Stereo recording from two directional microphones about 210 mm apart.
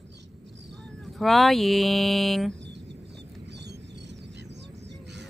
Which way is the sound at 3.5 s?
55° right (ahead or behind).